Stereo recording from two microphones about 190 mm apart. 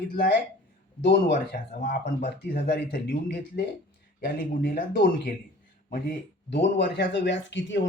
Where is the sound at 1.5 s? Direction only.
45° left (ahead or behind).